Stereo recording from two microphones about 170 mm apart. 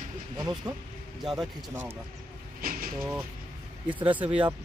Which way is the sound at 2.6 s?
55° right (ahead or behind).